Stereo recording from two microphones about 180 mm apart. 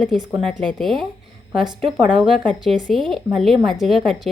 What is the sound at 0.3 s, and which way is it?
Speech, 5° left (ahead or behind).